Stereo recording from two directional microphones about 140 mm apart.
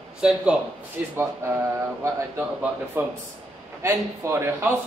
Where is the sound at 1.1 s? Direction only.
20° right (ahead or behind).